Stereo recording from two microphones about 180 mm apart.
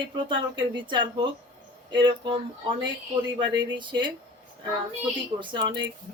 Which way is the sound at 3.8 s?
25° right (ahead or behind).